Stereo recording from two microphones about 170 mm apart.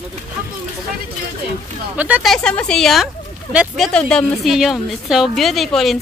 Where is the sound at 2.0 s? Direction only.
10° right (ahead or behind).